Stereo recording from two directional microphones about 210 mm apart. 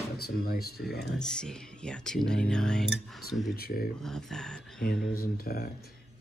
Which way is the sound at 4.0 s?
Centre (ahead or behind).